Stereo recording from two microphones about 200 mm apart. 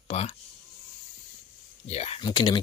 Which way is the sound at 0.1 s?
30° left (ahead or behind).